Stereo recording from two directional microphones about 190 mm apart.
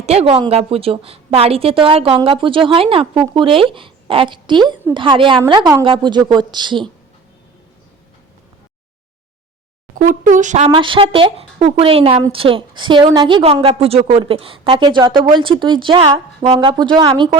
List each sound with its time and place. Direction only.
0.0 s a woman's voice: 35° right (ahead or behind)
10.0 s speech: 45° right (ahead or behind)
10.7 s a woman's voice: 25° right (ahead or behind)